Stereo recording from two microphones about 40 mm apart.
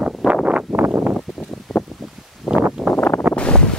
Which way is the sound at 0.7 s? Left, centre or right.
Right.